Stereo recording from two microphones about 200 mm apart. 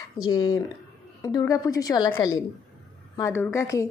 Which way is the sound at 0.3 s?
20° left (ahead or behind).